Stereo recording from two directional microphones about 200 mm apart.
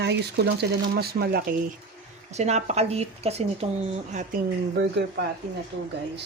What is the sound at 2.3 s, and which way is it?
Speech, 35° right (ahead or behind).